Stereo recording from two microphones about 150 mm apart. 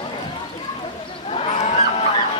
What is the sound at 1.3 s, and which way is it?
Goose, 40° left (ahead or behind).